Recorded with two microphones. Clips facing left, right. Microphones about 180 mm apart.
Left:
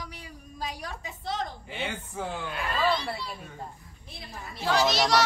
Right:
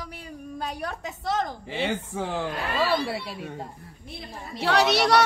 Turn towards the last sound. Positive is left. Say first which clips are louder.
# right 3 dB
turn(degrees=-60)  # may be behind; listen again after turning